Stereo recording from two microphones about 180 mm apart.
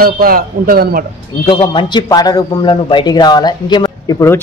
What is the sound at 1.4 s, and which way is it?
A man's voice, 30° left (ahead or behind).